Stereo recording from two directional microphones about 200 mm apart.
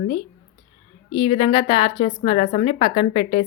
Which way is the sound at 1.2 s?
25° left (ahead or behind).